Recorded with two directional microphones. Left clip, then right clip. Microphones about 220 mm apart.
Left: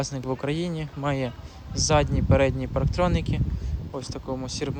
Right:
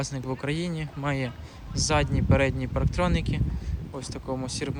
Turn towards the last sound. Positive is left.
turn(degrees=5)  # may be behind; listen again after turning